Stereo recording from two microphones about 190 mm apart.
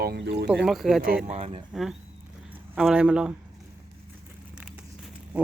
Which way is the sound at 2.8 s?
5° right (ahead or behind).